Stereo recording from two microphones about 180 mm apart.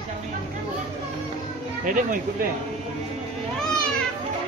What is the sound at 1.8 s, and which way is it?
Speech, 50° right (ahead or behind).